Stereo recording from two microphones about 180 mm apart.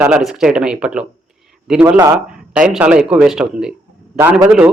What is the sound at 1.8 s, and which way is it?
Speech, 15° right (ahead or behind).